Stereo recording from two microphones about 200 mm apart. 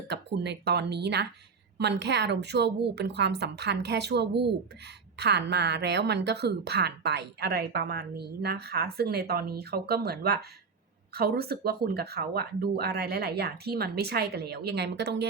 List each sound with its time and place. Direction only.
0.1 s a woman's voice: 60° right (ahead or behind)